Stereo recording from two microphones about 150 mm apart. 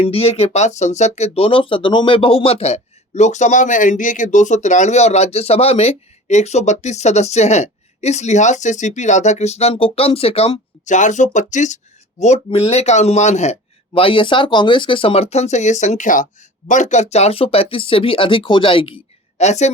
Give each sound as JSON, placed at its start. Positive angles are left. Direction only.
{"t": 0.0, "sound": "speech", "side_deg": 40}
{"t": 12.5, "sound": "speech", "side_deg": 45}
{"t": 19.4, "sound": "speech", "side_deg": 50}